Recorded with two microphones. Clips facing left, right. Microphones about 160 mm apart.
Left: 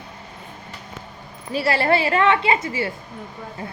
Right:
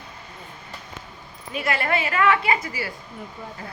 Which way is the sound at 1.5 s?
30° left (ahead or behind).